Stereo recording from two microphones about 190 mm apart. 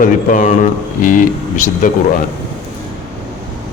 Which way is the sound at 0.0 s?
45° left (ahead or behind).